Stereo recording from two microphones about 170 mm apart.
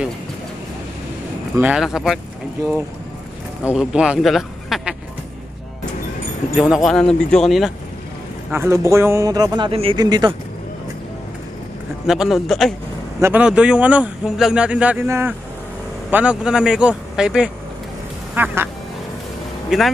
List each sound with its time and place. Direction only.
1.6 s a man's voice: 5° right (ahead or behind)
3.6 s a man's voice: 5° right (ahead or behind)
6.5 s a man's voice: centre (ahead or behind)
8.5 s speech: 15° right (ahead or behind)
9.7 s speech: 35° right (ahead or behind)
12.1 s a man's voice: centre (ahead or behind)
13.2 s a man's voice: 10° right (ahead or behind)
19.7 s a man's voice: centre (ahead or behind)